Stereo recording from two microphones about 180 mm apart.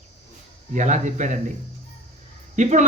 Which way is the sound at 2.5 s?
40° right (ahead or behind).